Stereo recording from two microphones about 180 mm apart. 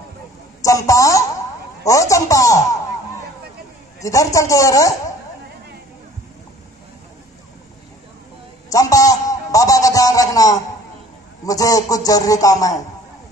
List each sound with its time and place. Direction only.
0.6 s a woman's voice: 20° left (ahead or behind)
4.0 s speech: 15° left (ahead or behind)
8.6 s a sound: 20° left (ahead or behind)
11.4 s a man's voice: 20° left (ahead or behind)